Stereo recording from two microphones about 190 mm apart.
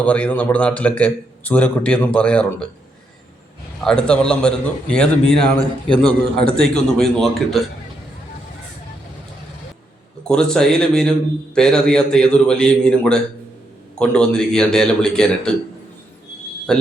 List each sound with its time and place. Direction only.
0.0 s a man's voice: 10° left (ahead or behind)
3.8 s a man's voice: 5° left (ahead or behind)
10.2 s a man's voice: 5° left (ahead or behind)
16.7 s a man's voice: 5° left (ahead or behind)